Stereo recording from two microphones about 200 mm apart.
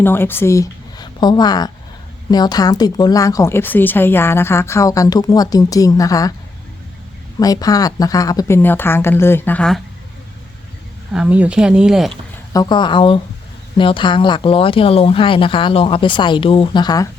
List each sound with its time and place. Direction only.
0.0 s speech: 10° left (ahead or behind)
7.3 s speech: 20° left (ahead or behind)
11.1 s speech: 5° right (ahead or behind)
12.5 s speech: 20° left (ahead or behind)